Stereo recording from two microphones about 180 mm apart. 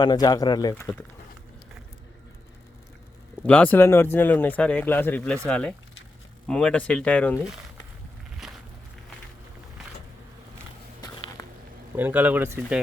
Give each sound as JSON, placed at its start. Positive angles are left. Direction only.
{"t": 0.0, "sound": "speech", "side_deg": 20}
{"t": 3.4, "sound": "speech", "side_deg": 5}
{"t": 11.0, "sound": "a sound", "side_deg": 20}
{"t": 11.9, "sound": "speech", "side_deg": -10}